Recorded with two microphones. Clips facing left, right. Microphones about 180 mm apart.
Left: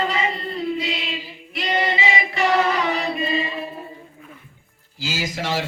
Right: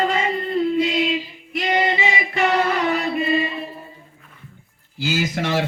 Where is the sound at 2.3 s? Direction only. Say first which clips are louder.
Even; 55° right (ahead or behind).